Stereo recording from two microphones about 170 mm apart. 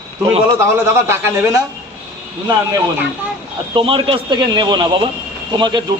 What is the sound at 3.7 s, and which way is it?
A man's voice, 30° right (ahead or behind).